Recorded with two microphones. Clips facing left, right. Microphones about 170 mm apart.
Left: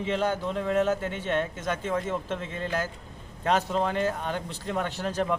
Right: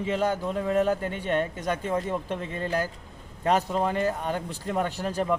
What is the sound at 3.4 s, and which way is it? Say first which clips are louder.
Speech: right 1 dB; 5° right (ahead or behind).